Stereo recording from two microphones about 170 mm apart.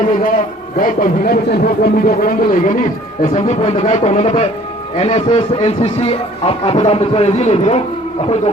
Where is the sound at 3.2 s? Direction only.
40° left (ahead or behind).